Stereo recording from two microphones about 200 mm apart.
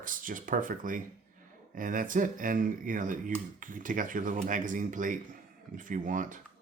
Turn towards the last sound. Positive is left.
turn(degrees=-40)  # may be behind; listen again after turning